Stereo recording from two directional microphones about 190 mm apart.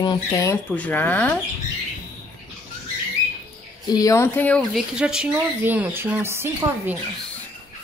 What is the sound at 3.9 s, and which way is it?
Speech, 20° left (ahead or behind).